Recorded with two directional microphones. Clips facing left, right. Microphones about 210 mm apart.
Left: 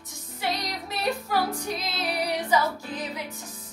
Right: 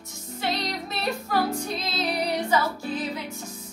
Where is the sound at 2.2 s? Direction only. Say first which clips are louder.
Left 1 dB; 15° left (ahead or behind).